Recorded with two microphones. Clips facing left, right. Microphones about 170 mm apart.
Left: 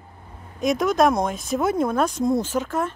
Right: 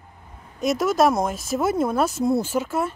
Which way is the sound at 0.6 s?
5° right (ahead or behind).